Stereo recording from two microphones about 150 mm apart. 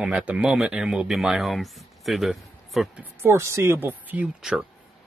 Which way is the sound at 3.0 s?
15° right (ahead or behind).